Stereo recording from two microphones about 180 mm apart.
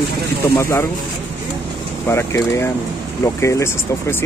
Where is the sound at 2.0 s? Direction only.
15° left (ahead or behind).